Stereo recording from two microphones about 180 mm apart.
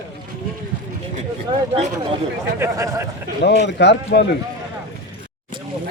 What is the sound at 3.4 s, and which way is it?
Speech, 70° left (ahead or behind).